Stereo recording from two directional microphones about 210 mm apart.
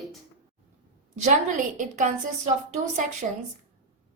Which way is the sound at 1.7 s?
35° right (ahead or behind).